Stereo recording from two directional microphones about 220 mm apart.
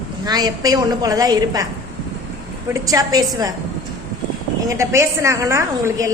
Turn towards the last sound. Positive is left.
turn(degrees=-15)  # may be behind; listen again after turning